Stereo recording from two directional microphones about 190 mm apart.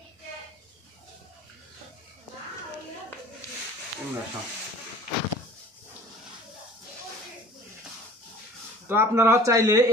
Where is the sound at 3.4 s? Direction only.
15° left (ahead or behind).